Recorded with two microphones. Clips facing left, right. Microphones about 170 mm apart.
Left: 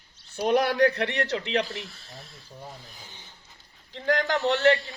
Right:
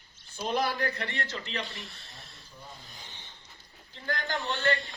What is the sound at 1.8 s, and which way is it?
Speech, centre (ahead or behind).